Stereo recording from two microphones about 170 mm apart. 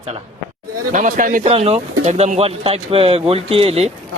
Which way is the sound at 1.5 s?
35° right (ahead or behind).